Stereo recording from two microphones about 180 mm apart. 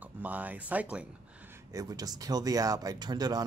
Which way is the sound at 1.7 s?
20° right (ahead or behind).